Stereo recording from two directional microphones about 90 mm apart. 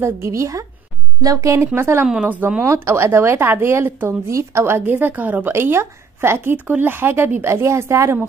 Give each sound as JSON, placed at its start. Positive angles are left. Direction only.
{"t": 0.0, "sound": "a woman's voice", "side_deg": -30}
{"t": 2.0, "sound": "speech", "side_deg": -15}
{"t": 2.6, "sound": "speech", "side_deg": -30}